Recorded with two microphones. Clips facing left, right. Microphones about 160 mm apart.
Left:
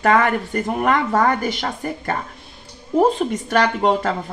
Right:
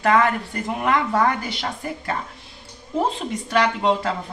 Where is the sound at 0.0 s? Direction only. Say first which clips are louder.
Left 2 dB; 50° left (ahead or behind).